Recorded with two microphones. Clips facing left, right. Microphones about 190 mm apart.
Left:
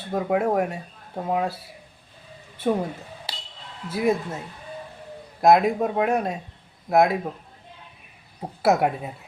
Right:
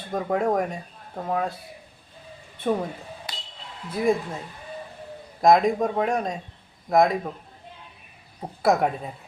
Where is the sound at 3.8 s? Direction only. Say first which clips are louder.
Even; 5° left (ahead or behind).